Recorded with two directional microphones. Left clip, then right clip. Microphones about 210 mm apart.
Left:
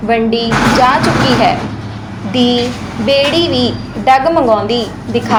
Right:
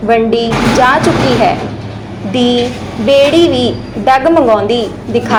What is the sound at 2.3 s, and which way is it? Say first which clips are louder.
A woman's voice: right 1 dB; 15° right (ahead or behind).